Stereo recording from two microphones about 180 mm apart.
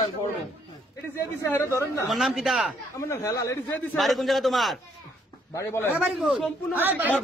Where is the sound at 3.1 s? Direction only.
15° left (ahead or behind).